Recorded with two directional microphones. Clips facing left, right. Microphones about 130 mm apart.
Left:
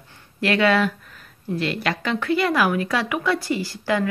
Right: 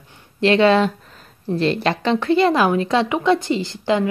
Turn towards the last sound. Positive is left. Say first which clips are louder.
# right 4 dB
turn(degrees=-20)  # may be behind; listen again after turning